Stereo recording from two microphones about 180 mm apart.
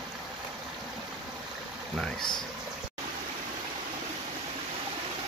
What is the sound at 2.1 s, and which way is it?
Speech, 25° left (ahead or behind).